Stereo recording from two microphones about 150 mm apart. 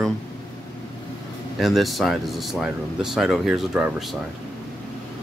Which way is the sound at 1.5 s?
Centre (ahead or behind).